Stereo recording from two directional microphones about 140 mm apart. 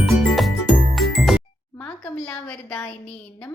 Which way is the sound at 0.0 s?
Centre (ahead or behind).